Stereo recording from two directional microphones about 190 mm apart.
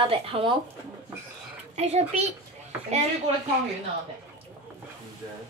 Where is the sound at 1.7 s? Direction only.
35° right (ahead or behind).